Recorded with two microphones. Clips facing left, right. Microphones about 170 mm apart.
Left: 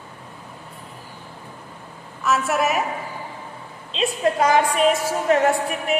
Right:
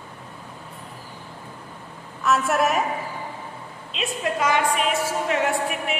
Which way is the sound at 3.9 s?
35° left (ahead or behind).